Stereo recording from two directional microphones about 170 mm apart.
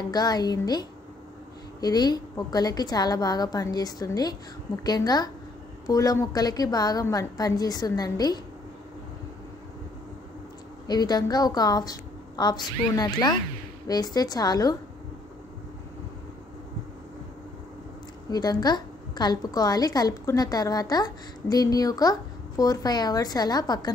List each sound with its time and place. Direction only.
0.1 s a woman's voice: 25° left (ahead or behind)
10.9 s a woman's voice: 25° left (ahead or behind)
18.3 s a woman's voice: 25° left (ahead or behind)